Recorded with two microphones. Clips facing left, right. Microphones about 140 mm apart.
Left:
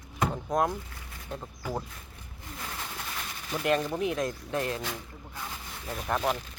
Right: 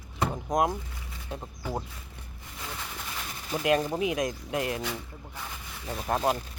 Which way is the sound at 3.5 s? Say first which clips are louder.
Right 2 dB; 20° right (ahead or behind).